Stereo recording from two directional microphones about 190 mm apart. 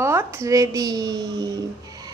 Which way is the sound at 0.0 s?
15° right (ahead or behind).